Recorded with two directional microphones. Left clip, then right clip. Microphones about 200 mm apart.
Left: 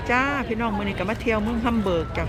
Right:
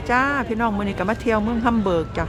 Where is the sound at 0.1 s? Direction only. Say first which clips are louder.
Right 3 dB; 15° right (ahead or behind).